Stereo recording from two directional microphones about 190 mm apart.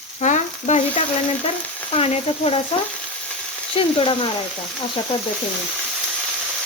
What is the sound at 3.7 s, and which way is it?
Speech, 30° left (ahead or behind).